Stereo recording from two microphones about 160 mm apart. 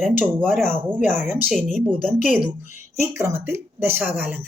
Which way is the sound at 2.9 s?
15° right (ahead or behind).